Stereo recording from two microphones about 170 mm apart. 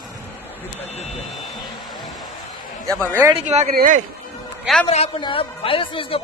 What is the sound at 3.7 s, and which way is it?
Speech, 50° right (ahead or behind).